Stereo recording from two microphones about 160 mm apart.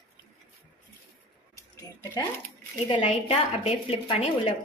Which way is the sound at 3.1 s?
40° left (ahead or behind).